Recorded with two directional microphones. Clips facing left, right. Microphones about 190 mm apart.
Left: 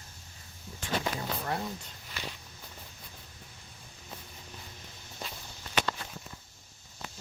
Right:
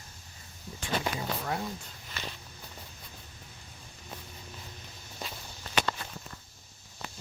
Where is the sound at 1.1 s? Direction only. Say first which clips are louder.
Right 1 dB; centre (ahead or behind).